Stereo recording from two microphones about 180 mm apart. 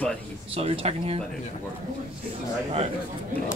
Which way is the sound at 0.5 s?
30° right (ahead or behind).